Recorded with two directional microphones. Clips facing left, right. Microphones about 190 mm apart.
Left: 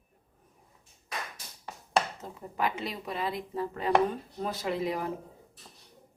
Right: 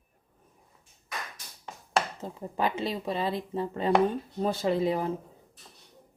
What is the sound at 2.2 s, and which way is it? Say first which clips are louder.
Speech: right 2 dB; 30° right (ahead or behind).